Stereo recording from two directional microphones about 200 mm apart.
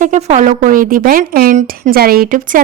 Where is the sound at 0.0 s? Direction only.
35° right (ahead or behind).